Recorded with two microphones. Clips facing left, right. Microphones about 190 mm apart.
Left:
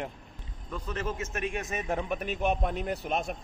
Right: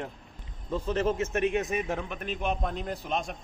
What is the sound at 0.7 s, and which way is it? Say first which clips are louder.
Speech: right 7 dB; 30° right (ahead or behind).